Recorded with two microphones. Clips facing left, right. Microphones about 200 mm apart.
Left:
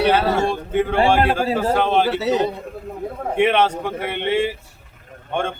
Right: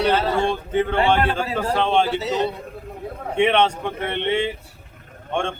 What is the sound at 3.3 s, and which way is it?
Speech, 5° left (ahead or behind).